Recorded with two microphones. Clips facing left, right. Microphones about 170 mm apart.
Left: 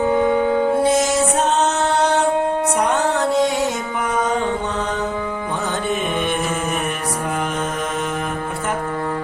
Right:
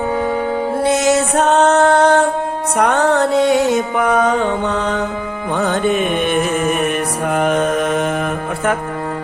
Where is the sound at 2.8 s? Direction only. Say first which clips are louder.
Right 7 dB; 65° right (ahead or behind).